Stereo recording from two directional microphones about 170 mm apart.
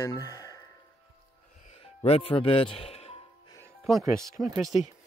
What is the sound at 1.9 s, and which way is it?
A man's voice, 35° left (ahead or behind).